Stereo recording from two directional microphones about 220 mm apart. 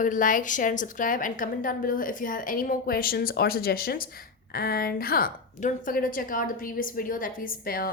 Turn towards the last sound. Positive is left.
turn(degrees=40)  # may be behind; listen again after turning